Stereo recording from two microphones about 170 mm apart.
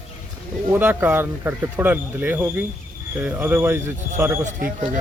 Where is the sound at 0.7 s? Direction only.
10° right (ahead or behind).